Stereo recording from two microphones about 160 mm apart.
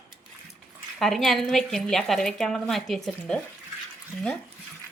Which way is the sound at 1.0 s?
Centre (ahead or behind).